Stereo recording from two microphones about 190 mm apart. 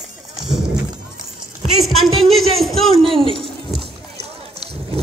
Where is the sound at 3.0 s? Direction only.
30° right (ahead or behind).